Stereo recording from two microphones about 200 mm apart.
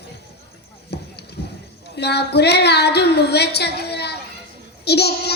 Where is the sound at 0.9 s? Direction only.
55° left (ahead or behind).